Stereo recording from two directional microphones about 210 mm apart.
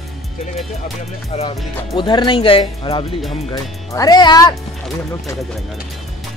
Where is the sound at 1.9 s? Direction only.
20° left (ahead or behind).